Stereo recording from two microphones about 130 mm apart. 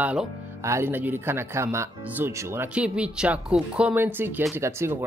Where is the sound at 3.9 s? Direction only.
15° right (ahead or behind).